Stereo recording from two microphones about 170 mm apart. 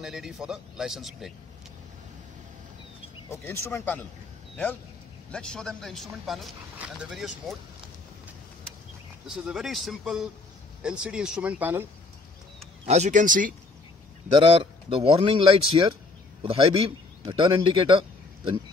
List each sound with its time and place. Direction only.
0.0 s speech: centre (ahead or behind)
3.3 s speech: 15° left (ahead or behind)
5.3 s speech: 5° left (ahead or behind)
9.3 s speech: 5° right (ahead or behind)
12.8 s speech: 40° right (ahead or behind)
14.3 s a man's voice: 35° right (ahead or behind)